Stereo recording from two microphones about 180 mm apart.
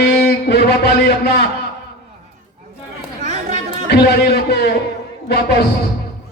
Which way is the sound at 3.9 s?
65° left (ahead or behind).